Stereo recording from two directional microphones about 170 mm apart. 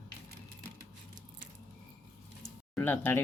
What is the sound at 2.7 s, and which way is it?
Speech, 10° left (ahead or behind).